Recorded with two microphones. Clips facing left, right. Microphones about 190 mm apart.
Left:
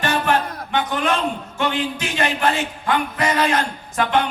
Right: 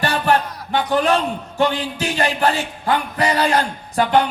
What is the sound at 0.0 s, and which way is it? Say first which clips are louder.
Speech: right 2 dB; 35° right (ahead or behind).